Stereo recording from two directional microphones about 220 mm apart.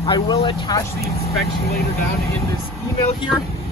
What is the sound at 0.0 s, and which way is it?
Speech, 20° left (ahead or behind).